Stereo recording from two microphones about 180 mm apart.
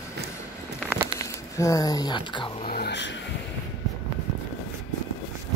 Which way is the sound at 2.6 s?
60° left (ahead or behind).